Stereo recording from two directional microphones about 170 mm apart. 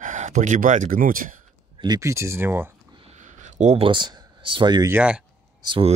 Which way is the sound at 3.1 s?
45° right (ahead or behind).